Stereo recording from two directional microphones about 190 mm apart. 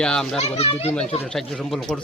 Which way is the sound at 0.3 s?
35° left (ahead or behind).